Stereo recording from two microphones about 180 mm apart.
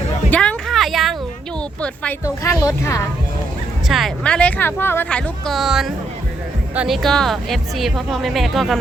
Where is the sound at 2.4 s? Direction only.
15° left (ahead or behind).